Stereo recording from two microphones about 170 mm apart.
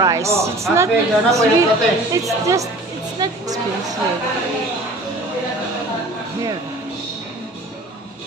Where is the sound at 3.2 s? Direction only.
20° right (ahead or behind).